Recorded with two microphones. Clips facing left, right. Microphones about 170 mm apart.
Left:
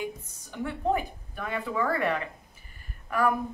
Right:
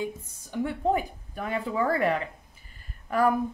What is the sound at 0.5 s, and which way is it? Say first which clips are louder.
Speech: right 2 dB; 20° right (ahead or behind).